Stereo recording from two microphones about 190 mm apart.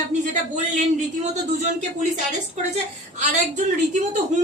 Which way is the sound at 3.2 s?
40° right (ahead or behind).